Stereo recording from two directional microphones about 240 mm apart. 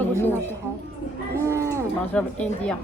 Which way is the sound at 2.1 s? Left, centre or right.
Centre.